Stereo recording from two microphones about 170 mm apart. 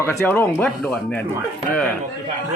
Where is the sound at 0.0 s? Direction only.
15° left (ahead or behind).